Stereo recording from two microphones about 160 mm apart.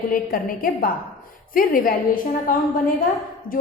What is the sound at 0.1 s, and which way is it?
A woman's voice, 60° left (ahead or behind).